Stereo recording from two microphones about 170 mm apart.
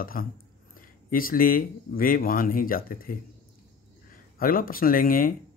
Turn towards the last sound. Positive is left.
turn(degrees=55)  # may be behind; listen again after turning